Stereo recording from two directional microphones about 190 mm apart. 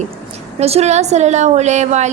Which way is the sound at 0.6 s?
35° right (ahead or behind).